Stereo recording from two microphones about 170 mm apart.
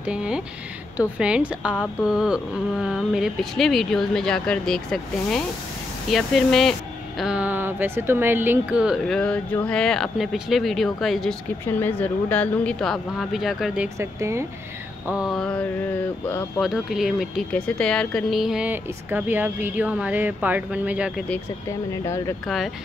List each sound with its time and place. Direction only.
0.0 s a woman's voice: 5° right (ahead or behind)
11.6 s a woman's voice: 10° left (ahead or behind)
13.9 s speech: 15° right (ahead or behind)
15.0 s a woman's voice: 5° right (ahead or behind)
16.6 s speech: centre (ahead or behind)
22.0 s speech: 15° left (ahead or behind)